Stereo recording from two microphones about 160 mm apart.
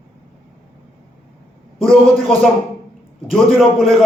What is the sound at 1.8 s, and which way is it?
A man's voice, 5° left (ahead or behind).